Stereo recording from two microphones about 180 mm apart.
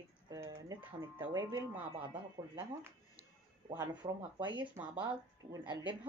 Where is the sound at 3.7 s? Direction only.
25° right (ahead or behind).